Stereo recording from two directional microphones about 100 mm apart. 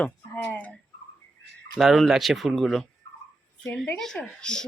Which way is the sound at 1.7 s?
Centre (ahead or behind).